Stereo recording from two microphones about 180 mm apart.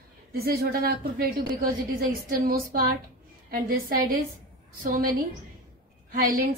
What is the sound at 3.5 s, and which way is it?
A woman's voice, 55° right (ahead or behind).